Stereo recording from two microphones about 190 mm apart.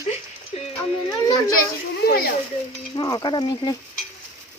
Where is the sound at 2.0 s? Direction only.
55° left (ahead or behind).